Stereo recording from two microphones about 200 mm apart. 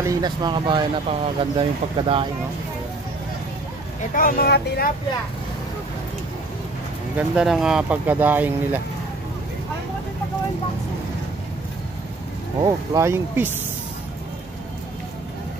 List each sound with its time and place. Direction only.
0.0 s speech: 20° right (ahead or behind)
4.1 s speech: 45° left (ahead or behind)
7.2 s speech: centre (ahead or behind)
12.9 s speech: 15° right (ahead or behind)